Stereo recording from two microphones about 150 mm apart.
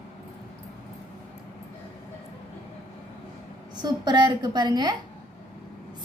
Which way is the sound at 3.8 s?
30° right (ahead or behind).